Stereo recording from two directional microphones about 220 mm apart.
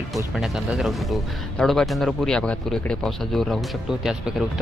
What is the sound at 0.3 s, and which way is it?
Speech, centre (ahead or behind).